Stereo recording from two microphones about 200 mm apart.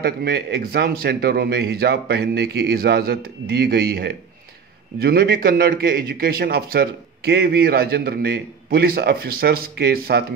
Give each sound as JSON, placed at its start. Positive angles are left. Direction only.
{"t": 0.0, "sound": "a man's voice", "side_deg": -55}